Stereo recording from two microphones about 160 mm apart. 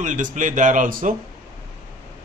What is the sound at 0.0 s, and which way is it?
Speech, 50° right (ahead or behind).